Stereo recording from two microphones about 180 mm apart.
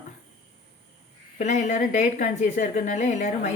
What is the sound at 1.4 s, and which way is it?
Speech, 40° left (ahead or behind).